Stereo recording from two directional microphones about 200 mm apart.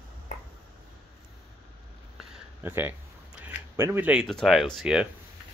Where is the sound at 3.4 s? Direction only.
10° right (ahead or behind).